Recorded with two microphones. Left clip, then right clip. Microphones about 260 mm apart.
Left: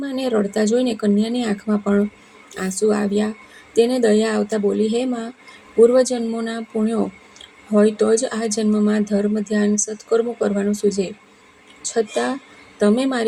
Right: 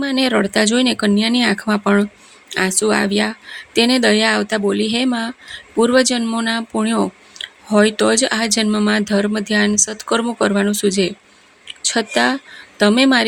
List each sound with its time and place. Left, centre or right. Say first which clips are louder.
0.0 s speech: right 4 dB; right